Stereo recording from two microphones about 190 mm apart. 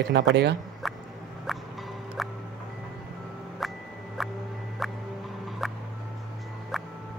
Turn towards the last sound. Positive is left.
turn(degrees=0)  # may be behind; listen again after turning